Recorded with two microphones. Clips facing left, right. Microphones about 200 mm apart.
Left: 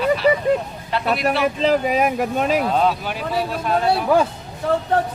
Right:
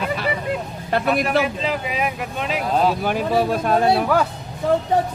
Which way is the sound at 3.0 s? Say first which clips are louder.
Right 4 dB; 50° right (ahead or behind).